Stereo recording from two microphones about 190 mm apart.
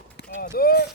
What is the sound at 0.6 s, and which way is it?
Speech, 55° left (ahead or behind).